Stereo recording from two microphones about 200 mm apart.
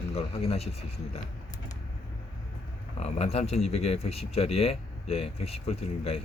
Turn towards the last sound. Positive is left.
turn(degrees=30)  # may be behind; listen again after turning